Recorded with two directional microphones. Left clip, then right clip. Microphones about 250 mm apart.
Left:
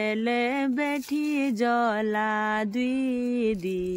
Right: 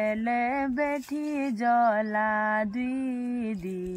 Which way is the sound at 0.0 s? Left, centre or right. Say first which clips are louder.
Left 1 dB; centre.